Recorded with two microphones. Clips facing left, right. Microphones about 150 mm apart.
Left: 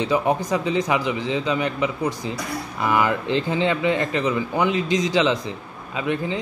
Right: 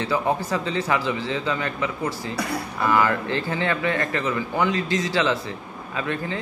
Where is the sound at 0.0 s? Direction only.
15° left (ahead or behind).